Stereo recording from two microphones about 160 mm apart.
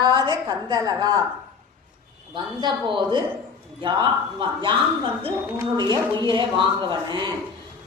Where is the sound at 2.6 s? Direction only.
30° right (ahead or behind).